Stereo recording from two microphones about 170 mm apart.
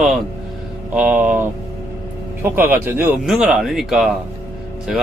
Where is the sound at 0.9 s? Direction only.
10° right (ahead or behind).